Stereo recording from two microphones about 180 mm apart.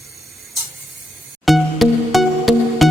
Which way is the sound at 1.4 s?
Centre (ahead or behind).